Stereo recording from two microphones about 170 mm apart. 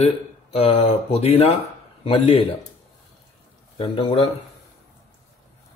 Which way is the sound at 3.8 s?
35° left (ahead or behind).